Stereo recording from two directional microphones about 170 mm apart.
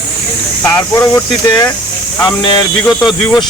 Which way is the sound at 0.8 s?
10° left (ahead or behind).